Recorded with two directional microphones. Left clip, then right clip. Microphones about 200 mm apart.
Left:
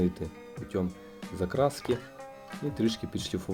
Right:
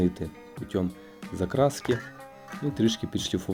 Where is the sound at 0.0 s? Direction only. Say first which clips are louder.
Right 3 dB; 15° right (ahead or behind).